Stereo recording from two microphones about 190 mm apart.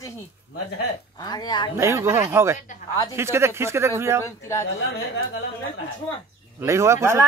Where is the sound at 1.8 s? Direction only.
15° right (ahead or behind).